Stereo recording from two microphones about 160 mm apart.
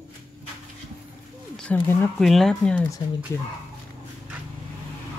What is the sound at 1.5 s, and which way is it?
Speech, 10° left (ahead or behind).